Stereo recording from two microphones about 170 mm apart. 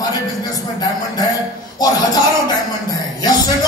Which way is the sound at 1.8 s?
25° left (ahead or behind).